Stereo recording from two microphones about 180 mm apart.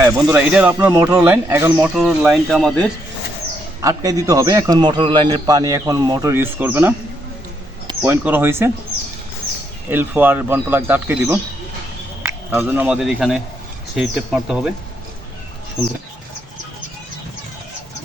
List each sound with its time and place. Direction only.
0.0 s speech: 10° right (ahead or behind)
3.8 s a man's voice: 20° right (ahead or behind)
8.0 s speech: 10° right (ahead or behind)
9.9 s speech: 10° right (ahead or behind)